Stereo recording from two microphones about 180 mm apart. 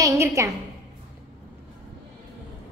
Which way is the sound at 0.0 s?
15° right (ahead or behind).